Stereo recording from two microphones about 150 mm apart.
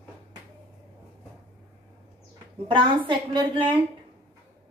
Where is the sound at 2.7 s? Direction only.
35° right (ahead or behind).